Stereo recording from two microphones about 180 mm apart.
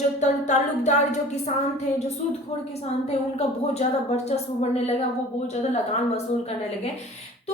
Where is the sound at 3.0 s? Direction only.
35° left (ahead or behind).